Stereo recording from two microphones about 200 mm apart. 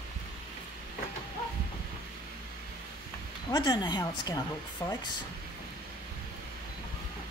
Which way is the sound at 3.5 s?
20° left (ahead or behind).